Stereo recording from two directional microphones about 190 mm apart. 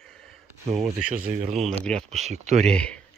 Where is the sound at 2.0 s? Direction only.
35° right (ahead or behind).